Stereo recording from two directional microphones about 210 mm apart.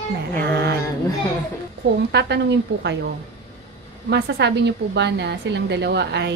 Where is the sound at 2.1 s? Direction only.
55° right (ahead or behind).